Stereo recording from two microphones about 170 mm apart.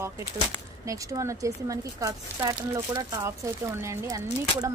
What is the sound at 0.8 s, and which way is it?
Speech, 20° right (ahead or behind).